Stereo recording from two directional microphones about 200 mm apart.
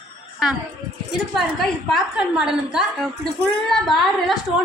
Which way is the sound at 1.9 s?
5° right (ahead or behind).